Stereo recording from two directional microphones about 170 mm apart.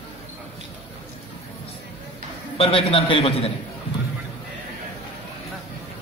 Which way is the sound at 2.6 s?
35° left (ahead or behind).